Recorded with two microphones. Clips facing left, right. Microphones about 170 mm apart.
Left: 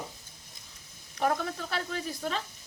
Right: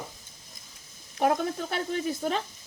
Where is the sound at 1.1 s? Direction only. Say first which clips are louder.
Right 4 dB; 30° right (ahead or behind).